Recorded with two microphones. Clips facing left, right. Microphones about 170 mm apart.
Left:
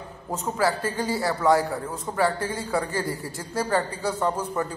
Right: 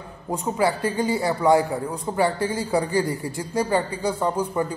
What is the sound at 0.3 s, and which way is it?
A man's voice, 20° right (ahead or behind).